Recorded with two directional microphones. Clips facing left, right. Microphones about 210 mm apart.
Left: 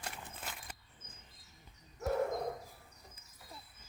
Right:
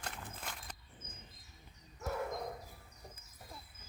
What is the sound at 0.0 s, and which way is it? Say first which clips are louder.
Horse: even; 5° left (ahead or behind).